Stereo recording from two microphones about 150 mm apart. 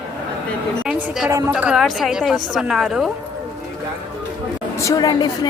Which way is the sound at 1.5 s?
5° right (ahead or behind).